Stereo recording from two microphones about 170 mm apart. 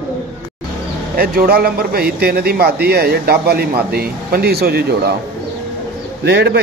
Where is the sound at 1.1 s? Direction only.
60° right (ahead or behind).